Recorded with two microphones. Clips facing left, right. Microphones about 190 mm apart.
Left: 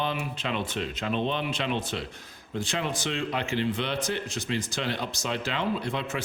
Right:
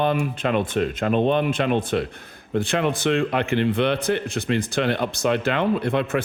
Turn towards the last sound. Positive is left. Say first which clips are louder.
# right 9 dB
turn(degrees=-60)  # may be behind; listen again after turning